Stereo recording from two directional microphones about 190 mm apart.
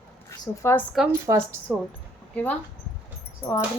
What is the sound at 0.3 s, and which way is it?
Speech, 15° left (ahead or behind).